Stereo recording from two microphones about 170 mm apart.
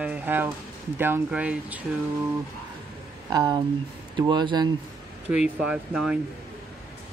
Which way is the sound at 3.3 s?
25° right (ahead or behind).